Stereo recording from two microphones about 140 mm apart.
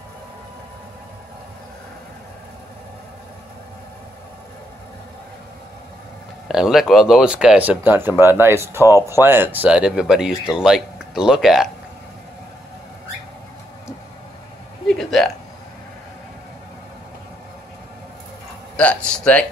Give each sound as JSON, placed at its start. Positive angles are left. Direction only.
{"t": 6.5, "sound": "speech", "side_deg": 0}
{"t": 14.9, "sound": "hiccup", "side_deg": 5}
{"t": 18.8, "sound": "speech", "side_deg": 10}